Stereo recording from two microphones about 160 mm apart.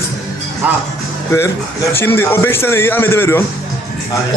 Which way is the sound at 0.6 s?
10° right (ahead or behind).